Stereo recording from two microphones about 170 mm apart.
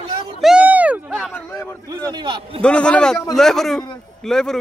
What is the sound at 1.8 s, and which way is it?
Speech, 25° right (ahead or behind).